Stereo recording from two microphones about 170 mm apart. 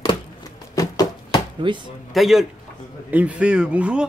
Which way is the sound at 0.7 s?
20° left (ahead or behind).